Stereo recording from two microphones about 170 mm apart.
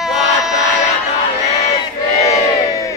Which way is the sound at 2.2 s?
20° left (ahead or behind).